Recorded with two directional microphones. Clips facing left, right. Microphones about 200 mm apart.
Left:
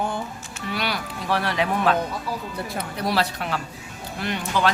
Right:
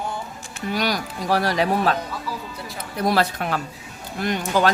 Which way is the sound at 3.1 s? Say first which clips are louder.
Right 3 dB; 50° right (ahead or behind).